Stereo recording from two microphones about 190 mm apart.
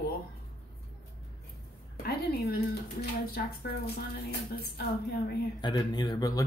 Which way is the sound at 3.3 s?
55° left (ahead or behind).